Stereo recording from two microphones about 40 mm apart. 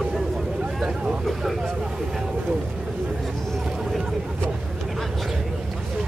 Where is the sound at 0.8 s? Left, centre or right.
Right.